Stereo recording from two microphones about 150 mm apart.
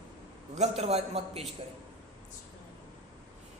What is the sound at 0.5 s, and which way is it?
Speech, 45° right (ahead or behind).